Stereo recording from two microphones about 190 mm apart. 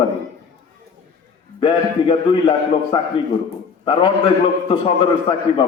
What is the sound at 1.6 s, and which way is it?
A man's voice, 25° left (ahead or behind).